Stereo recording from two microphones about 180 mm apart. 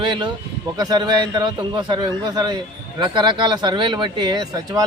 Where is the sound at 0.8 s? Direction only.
20° right (ahead or behind).